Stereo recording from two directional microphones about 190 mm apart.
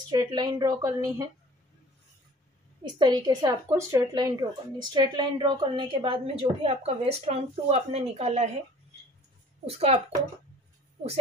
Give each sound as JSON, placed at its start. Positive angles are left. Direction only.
{"t": 0.1, "sound": "a woman's voice", "side_deg": -20}
{"t": 2.8, "sound": "a woman's voice", "side_deg": -20}
{"t": 9.7, "sound": "a woman's voice", "side_deg": -30}